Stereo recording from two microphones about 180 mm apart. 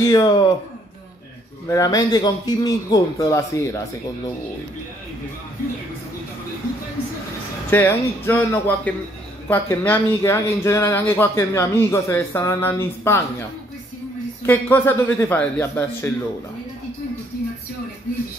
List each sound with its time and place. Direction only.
0.0 s a man's voice: 20° left (ahead or behind)
1.7 s a man's voice: 20° left (ahead or behind)
7.7 s speech: 15° left (ahead or behind)
14.4 s speech: 10° left (ahead or behind)